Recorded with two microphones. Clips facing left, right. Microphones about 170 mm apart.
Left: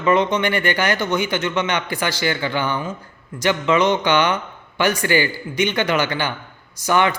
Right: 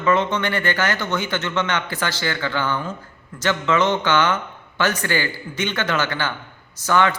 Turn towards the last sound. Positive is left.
turn(degrees=15)  # may be behind; listen again after turning